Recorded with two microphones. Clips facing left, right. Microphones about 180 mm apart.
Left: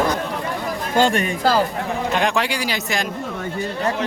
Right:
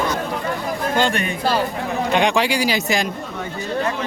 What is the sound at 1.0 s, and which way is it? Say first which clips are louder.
Speech: left 4 dB; 40° left (ahead or behind).